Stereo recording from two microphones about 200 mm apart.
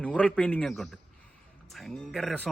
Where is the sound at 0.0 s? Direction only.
5° left (ahead or behind).